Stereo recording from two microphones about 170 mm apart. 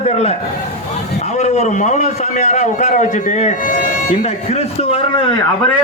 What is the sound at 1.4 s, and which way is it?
A man's voice, 40° left (ahead or behind).